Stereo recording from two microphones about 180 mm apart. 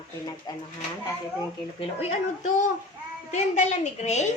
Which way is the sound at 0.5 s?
20° left (ahead or behind).